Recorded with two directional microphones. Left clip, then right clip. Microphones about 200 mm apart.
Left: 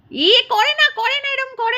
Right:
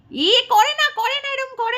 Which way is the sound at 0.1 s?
Centre (ahead or behind).